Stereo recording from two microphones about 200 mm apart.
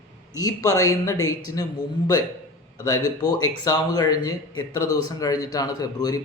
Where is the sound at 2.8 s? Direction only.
20° left (ahead or behind).